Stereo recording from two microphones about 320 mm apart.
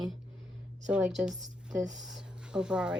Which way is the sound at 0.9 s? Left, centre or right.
Centre.